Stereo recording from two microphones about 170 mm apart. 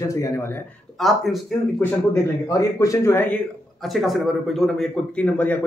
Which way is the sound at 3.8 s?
Centre (ahead or behind).